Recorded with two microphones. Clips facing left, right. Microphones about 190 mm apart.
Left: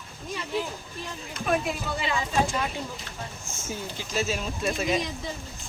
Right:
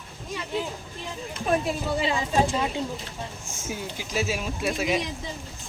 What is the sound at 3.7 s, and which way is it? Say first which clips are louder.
Speech: right 1 dB; 10° right (ahead or behind).